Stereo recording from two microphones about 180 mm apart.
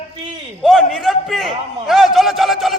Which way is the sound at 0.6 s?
Centre (ahead or behind).